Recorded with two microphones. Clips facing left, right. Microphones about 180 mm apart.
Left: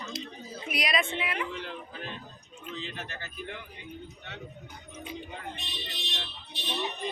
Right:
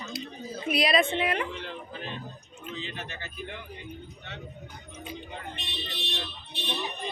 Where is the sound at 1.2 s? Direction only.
45° right (ahead or behind).